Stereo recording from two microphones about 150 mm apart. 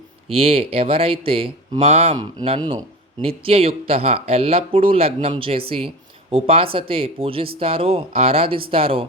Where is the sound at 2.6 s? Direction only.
30° right (ahead or behind).